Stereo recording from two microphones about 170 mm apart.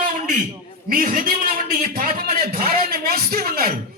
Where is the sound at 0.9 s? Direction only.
55° right (ahead or behind).